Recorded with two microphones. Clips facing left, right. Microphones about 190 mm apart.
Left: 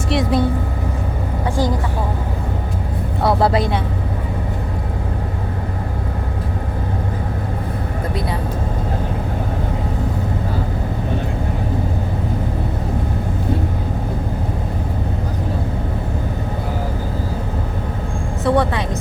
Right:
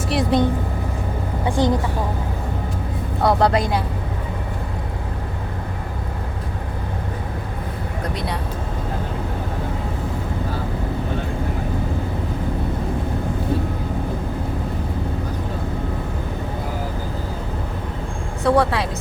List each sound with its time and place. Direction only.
0.1 s vehicle: centre (ahead or behind)
1.5 s vehicle: 20° right (ahead or behind)
3.2 s speech: centre (ahead or behind)
18.4 s a sound: centre (ahead or behind)